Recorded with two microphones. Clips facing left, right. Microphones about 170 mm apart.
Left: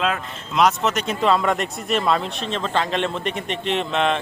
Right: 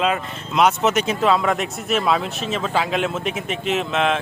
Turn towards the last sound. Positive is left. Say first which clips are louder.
# right 1 dB
turn(degrees=0)  # may be behind; listen again after turning